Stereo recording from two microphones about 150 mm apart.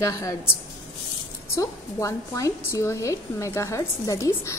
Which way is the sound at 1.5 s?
20° left (ahead or behind).